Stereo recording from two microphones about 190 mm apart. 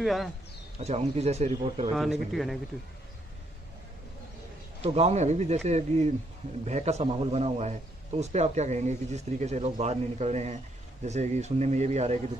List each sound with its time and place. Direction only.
0.0 s a man's voice: centre (ahead or behind)
0.7 s a man's voice: 35° right (ahead or behind)
2.0 s a man's voice: centre (ahead or behind)
4.8 s a man's voice: 30° right (ahead or behind)